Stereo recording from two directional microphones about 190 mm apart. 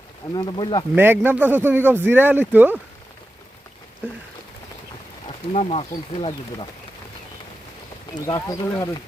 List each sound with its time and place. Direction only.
0.3 s speech: 25° left (ahead or behind)
0.9 s speech: 10° right (ahead or behind)
5.5 s speech: 30° left (ahead or behind)
8.3 s speech: 20° left (ahead or behind)